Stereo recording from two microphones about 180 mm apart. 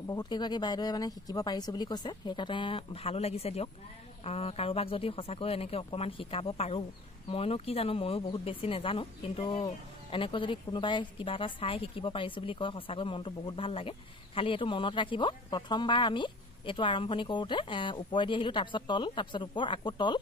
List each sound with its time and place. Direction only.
0.0 s a woman's voice: 20° left (ahead or behind)